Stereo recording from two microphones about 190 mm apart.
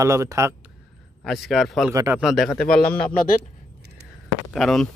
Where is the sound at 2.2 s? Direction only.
Centre (ahead or behind).